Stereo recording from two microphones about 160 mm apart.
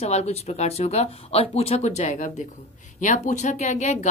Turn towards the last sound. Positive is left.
turn(degrees=45)  # may be behind; listen again after turning